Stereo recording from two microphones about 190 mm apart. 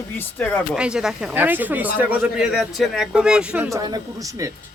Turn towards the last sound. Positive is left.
turn(degrees=-20)  # may be behind; listen again after turning